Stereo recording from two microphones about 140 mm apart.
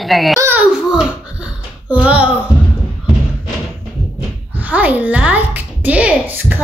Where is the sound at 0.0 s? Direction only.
Centre (ahead or behind).